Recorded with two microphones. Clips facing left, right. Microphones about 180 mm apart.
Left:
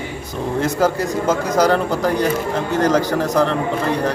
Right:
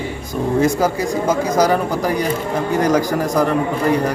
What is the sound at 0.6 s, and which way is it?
A man's voice, 10° right (ahead or behind).